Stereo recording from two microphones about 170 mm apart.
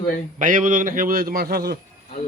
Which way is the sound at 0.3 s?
50° right (ahead or behind).